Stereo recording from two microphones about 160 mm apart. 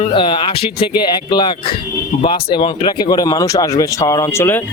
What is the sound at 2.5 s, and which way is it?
Speech, 30° left (ahead or behind).